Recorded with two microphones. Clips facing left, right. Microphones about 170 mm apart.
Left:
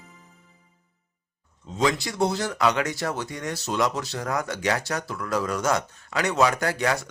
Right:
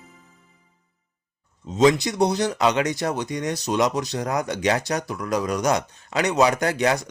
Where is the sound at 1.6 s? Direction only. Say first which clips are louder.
Right 7 dB; 20° right (ahead or behind).